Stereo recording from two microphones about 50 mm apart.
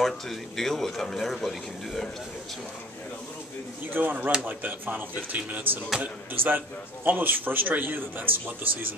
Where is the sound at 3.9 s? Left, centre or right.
Right.